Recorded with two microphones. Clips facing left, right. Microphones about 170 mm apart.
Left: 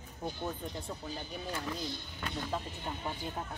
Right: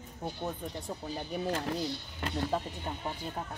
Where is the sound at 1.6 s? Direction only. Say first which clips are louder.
Right 4 dB; 40° right (ahead or behind).